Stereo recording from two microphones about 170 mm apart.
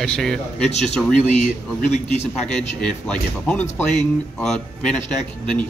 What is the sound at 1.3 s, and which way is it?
Speech, 45° left (ahead or behind).